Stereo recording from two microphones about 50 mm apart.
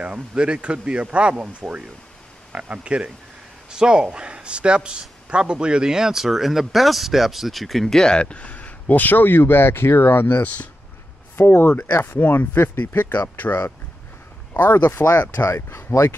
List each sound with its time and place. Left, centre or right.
0.0 s speech: right
1.4 s a man's voice: right; by 10.7 s left
11.3 s speech: left
14.6 s speech: left
15.0 s speech: left
15.4 s speech: left